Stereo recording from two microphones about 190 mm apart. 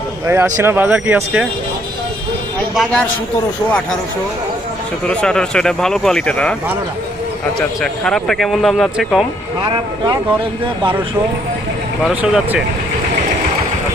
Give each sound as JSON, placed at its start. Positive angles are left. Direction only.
{"t": 0.3, "sound": "speech", "side_deg": -15}
{"t": 2.7, "sound": "speech", "side_deg": 0}
{"t": 5.0, "sound": "speech", "side_deg": 5}
{"t": 7.8, "sound": "speech", "side_deg": 5}
{"t": 9.6, "sound": "speech", "side_deg": -20}
{"t": 12.0, "sound": "speech", "side_deg": -5}